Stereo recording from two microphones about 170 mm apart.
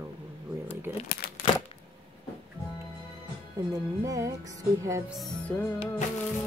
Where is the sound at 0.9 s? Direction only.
10° right (ahead or behind).